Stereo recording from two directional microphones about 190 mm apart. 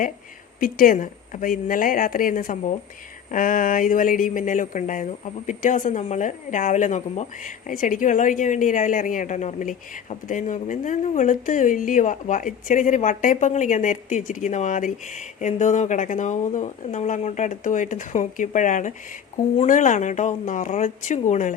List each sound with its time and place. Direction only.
0.6 s speech: 45° left (ahead or behind)